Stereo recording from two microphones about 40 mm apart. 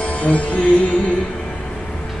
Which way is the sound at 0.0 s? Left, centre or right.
Left.